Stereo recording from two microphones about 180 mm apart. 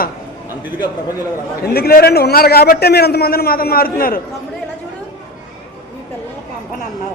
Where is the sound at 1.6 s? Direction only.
60° left (ahead or behind).